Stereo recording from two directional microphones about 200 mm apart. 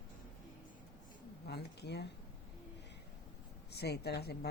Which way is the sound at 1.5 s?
55° left (ahead or behind).